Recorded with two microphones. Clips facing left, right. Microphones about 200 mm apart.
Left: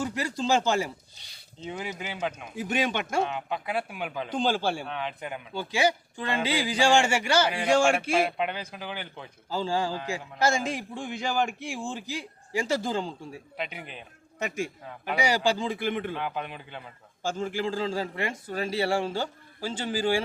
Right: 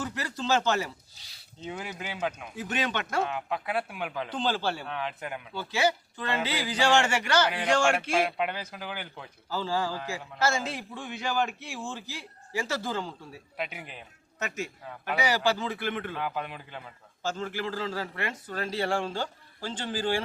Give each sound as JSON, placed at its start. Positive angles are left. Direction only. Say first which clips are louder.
{"t": 0.0, "sound": "a man's voice", "louder": "left 4 dB", "side_deg": 15}
{"t": 1.1, "sound": "speech", "louder": "left 2 dB", "side_deg": -5}
{"t": 2.6, "sound": "a man's voice", "louder": "left 4 dB", "side_deg": 10}
{"t": 3.2, "sound": "speech", "louder": "even", "side_deg": 0}
{"t": 4.3, "sound": "a man's voice", "louder": "left 4 dB", "side_deg": 10}
{"t": 4.9, "sound": "speech", "louder": "left 1 dB", "side_deg": 0}
{"t": 5.5, "sound": "a man's voice", "louder": "left 2 dB", "side_deg": 15}
{"t": 8.4, "sound": "speech", "louder": "left 1 dB", "side_deg": 0}
{"t": 9.5, "sound": "a man's voice", "louder": "left 2 dB", "side_deg": 15}
{"t": 13.6, "sound": "speech", "louder": "even", "side_deg": -5}
{"t": 14.3, "sound": "a man's voice", "louder": "left 3 dB", "side_deg": 10}
{"t": 16.1, "sound": "speech", "louder": "left 1 dB", "side_deg": 0}
{"t": 17.2, "sound": "a man's voice", "louder": "left 3 dB", "side_deg": 15}